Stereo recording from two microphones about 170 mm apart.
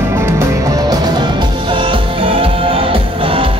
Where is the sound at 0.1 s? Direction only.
15° right (ahead or behind).